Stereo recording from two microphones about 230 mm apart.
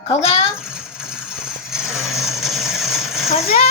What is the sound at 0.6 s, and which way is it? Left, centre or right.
Mechanisms, centre.